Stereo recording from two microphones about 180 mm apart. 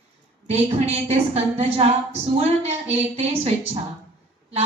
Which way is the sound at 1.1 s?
35° right (ahead or behind).